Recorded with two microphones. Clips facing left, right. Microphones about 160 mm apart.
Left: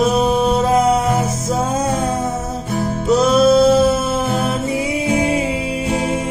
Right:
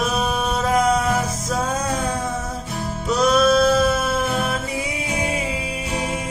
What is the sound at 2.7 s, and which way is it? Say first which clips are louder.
Music: left 8 dB; 50° left (ahead or behind).